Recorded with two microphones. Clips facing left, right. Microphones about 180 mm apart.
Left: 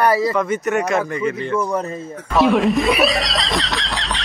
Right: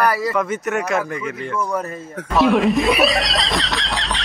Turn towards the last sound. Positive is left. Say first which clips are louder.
# right 1 dB
turn(degrees=0)  # may be behind; listen again after turning